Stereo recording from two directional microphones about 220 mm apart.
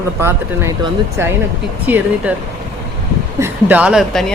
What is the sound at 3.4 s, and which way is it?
Speech, 5° right (ahead or behind).